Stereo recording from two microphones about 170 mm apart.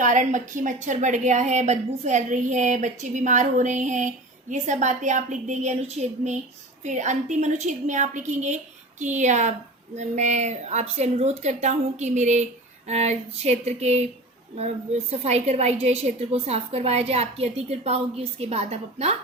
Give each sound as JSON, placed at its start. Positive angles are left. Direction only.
{"t": 0.0, "sound": "a woman's voice", "side_deg": -50}